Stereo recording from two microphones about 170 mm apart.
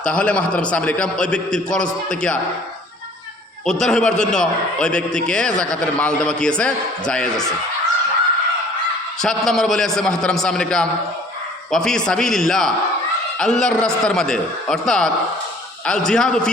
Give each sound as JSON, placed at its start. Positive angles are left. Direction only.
{"t": 0.0, "sound": "a man's voice", "side_deg": 5}
{"t": 3.7, "sound": "a man's voice", "side_deg": 5}
{"t": 9.2, "sound": "a man's voice", "side_deg": 0}